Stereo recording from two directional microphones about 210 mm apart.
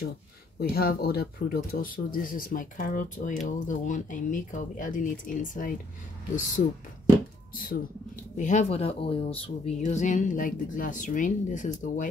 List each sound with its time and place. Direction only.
0.6 s speech: 45° left (ahead or behind)
7.5 s speech: 40° left (ahead or behind)